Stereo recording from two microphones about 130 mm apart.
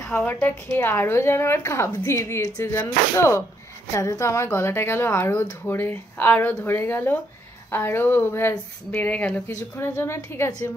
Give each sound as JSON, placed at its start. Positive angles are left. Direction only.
{"t": 0.0, "sound": "a woman's voice", "side_deg": 15}